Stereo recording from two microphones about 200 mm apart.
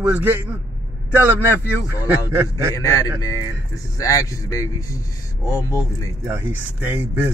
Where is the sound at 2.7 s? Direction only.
15° left (ahead or behind).